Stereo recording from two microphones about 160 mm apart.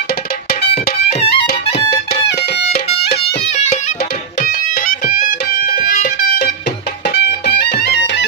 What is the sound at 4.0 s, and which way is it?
Music, 70° left (ahead or behind).